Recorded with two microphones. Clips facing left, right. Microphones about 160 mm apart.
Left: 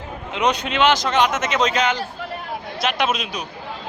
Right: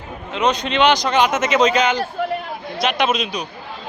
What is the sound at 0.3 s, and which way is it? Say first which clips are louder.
A man's voice: right 2 dB; 10° left (ahead or behind).